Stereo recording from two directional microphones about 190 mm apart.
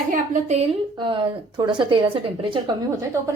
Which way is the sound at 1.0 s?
25° right (ahead or behind).